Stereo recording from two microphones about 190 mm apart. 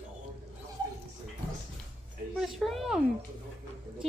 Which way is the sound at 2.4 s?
Centre (ahead or behind).